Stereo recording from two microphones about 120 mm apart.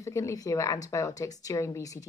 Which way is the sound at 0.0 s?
25° left (ahead or behind).